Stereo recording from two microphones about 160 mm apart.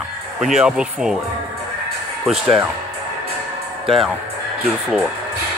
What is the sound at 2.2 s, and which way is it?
Speech, centre (ahead or behind).